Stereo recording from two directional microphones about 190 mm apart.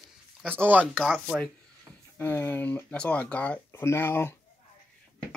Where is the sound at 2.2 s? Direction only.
10° left (ahead or behind).